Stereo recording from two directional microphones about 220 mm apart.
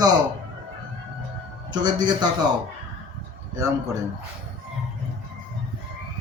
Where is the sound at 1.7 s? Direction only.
20° right (ahead or behind).